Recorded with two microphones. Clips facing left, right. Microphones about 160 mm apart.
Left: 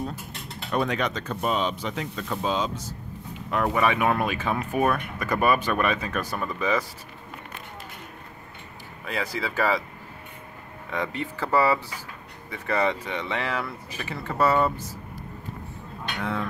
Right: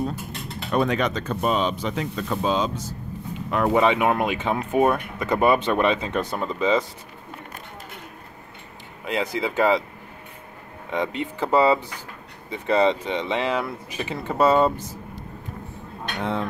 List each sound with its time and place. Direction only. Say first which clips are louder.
0.7 s speech: right 4 dB; 30° right (ahead or behind)
9.0 s speech: right 5 dB; 20° right (ahead or behind)
10.9 s speech: right 4 dB; 20° right (ahead or behind)
16.2 s speech: right 3 dB; 20° right (ahead or behind)